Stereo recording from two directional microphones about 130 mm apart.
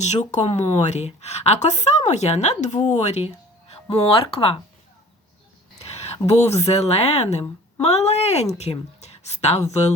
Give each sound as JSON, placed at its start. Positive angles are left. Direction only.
{"t": 0.0, "sound": "a woman's voice", "side_deg": 60}
{"t": 3.8, "sound": "speech", "side_deg": 45}
{"t": 6.0, "sound": "a woman's voice", "side_deg": 55}